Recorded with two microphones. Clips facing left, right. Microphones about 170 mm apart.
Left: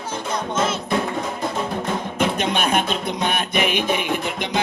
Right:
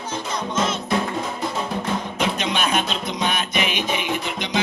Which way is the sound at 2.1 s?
55° left (ahead or behind).